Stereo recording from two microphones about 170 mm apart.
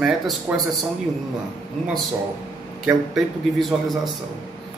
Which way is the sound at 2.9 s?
Centre (ahead or behind).